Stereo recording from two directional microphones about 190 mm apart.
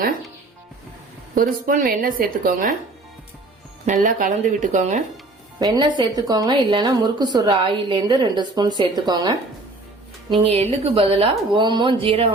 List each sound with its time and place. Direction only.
1.4 s a woman's voice: 45° right (ahead or behind)
3.8 s speech: 40° right (ahead or behind)
5.5 s a woman's voice: 20° right (ahead or behind)